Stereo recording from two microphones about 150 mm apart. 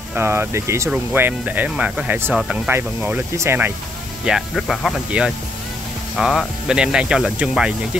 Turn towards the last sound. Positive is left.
turn(degrees=-5)  # may be behind; listen again after turning